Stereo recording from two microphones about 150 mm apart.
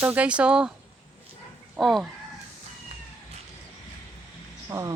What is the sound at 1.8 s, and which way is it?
Speech, centre (ahead or behind).